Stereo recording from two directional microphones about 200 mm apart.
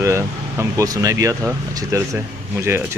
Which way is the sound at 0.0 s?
15° right (ahead or behind).